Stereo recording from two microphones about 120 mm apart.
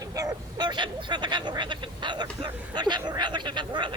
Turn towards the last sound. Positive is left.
turn(degrees=-40)  # may be behind; listen again after turning